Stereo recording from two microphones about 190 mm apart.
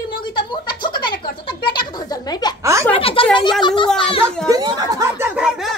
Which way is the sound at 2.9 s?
30° left (ahead or behind).